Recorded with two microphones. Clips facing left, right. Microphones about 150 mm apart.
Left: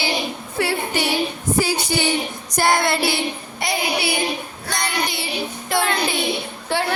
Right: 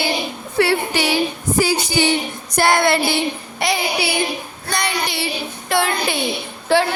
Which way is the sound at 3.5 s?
90° right.